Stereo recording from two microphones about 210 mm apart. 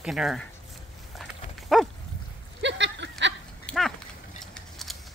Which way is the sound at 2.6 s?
55° right (ahead or behind).